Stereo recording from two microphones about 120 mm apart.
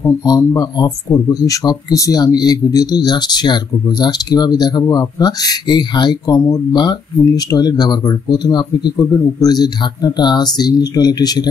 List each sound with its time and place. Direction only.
0.0 s speech: 25° left (ahead or behind)